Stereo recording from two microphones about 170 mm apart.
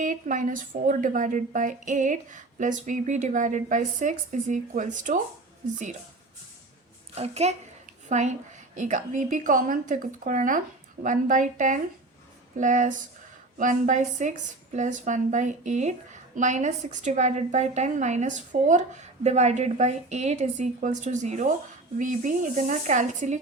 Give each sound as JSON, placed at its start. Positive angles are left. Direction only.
{"t": 0.0, "sound": "a woman's voice", "side_deg": -50}
{"t": 7.2, "sound": "a woman's voice", "side_deg": -40}